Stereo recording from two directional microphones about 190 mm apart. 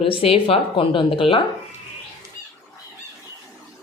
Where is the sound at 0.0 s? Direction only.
30° left (ahead or behind).